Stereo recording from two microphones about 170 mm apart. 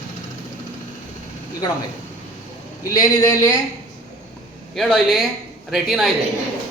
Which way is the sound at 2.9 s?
20° left (ahead or behind).